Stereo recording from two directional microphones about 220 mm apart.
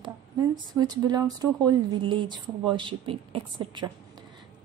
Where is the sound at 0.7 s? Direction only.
15° right (ahead or behind).